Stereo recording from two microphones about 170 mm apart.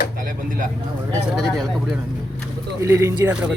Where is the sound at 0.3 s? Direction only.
55° right (ahead or behind).